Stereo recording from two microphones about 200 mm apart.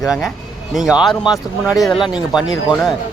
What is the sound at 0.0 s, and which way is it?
Speech, centre (ahead or behind).